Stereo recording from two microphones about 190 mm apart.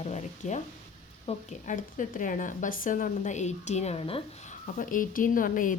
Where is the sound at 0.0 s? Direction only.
40° left (ahead or behind).